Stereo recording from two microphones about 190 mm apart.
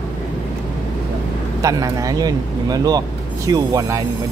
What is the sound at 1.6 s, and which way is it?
Speech, 20° right (ahead or behind).